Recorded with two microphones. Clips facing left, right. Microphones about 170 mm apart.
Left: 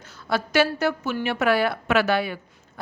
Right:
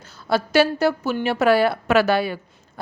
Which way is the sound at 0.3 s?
30° right (ahead or behind).